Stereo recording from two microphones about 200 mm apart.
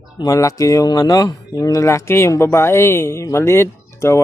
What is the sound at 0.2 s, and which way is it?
Speech, 15° left (ahead or behind).